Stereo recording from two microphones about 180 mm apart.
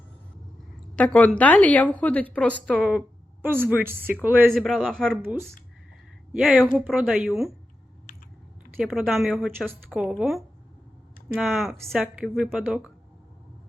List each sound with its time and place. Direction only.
0.9 s speech: 10° left (ahead or behind)
2.7 s a woman's voice: 5° right (ahead or behind)
4.5 s a woman's voice: centre (ahead or behind)
5.2 s a woman's voice: 10° right (ahead or behind)
8.1 s biting: 50° left (ahead or behind)
8.7 s a woman's voice: centre (ahead or behind)